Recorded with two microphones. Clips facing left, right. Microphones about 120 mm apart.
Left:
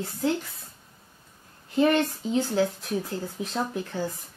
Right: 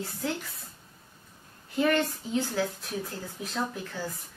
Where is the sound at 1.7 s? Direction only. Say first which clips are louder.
Left 4 dB; 25° left (ahead or behind).